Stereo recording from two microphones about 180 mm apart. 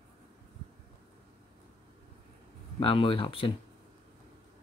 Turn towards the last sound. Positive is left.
turn(degrees=30)  # may be behind; listen again after turning